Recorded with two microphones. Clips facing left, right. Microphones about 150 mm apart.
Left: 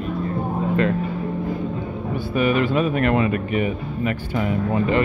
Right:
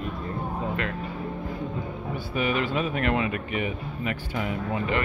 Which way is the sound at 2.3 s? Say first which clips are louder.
Left 7 dB; 55° left (ahead or behind).